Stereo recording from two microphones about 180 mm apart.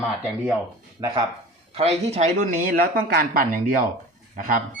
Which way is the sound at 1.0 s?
25° right (ahead or behind).